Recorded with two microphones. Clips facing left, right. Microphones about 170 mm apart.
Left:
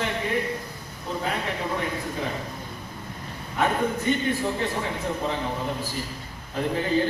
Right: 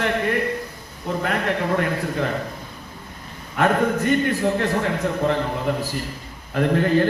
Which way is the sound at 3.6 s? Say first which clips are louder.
Right 5 dB; 65° right (ahead or behind).